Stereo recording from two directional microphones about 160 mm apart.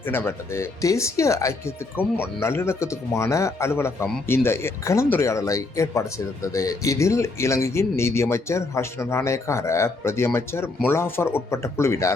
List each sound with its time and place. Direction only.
0.0 s speech: 15° left (ahead or behind)